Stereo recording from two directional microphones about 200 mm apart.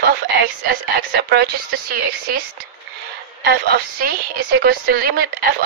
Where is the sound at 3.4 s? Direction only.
55° right (ahead or behind).